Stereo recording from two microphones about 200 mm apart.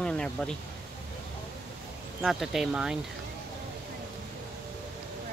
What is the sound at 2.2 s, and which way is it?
Speech, centre (ahead or behind).